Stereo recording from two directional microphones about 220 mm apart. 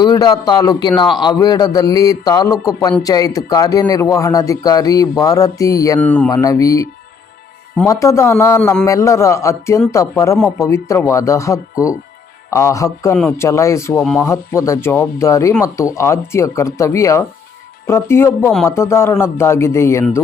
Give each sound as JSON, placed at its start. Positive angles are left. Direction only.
{"t": 0.0, "sound": "a man's voice", "side_deg": 20}
{"t": 7.9, "sound": "a man's voice", "side_deg": 15}
{"t": 14.0, "sound": "speech", "side_deg": 5}
{"t": 14.3, "sound": "a man's voice", "side_deg": 15}